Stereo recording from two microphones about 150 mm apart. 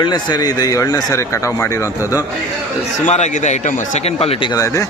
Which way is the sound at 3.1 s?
50° left (ahead or behind).